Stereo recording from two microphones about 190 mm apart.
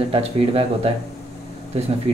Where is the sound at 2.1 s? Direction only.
35° right (ahead or behind).